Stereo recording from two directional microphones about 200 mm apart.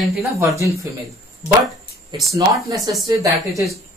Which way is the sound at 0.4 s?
15° right (ahead or behind).